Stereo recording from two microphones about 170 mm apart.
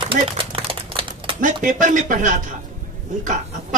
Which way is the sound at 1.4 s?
50° right (ahead or behind).